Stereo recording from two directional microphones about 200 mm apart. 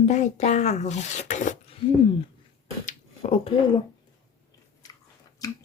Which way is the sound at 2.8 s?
35° left (ahead or behind).